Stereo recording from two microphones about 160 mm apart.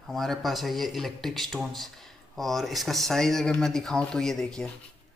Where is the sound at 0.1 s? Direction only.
Centre (ahead or behind).